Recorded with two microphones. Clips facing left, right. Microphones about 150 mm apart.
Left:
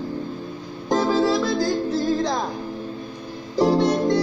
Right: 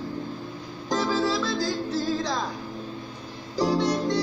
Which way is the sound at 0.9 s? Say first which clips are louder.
Left 5 dB; 55° left (ahead or behind).